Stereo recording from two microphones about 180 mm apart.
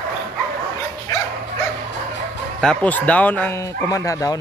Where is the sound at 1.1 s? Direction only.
20° left (ahead or behind).